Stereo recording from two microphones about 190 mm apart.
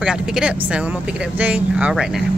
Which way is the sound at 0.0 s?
5° right (ahead or behind).